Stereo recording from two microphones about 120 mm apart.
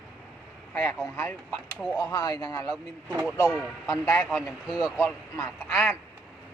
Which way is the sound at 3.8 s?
25° left (ahead or behind).